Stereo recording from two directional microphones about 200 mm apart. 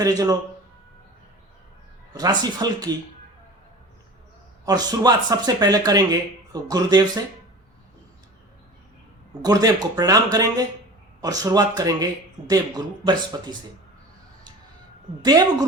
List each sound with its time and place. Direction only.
0.0 s speech: 20° right (ahead or behind)
2.1 s speech: 20° right (ahead or behind)
4.6 s speech: 20° right (ahead or behind)
9.4 s speech: 20° right (ahead or behind)
15.2 s speech: 20° right (ahead or behind)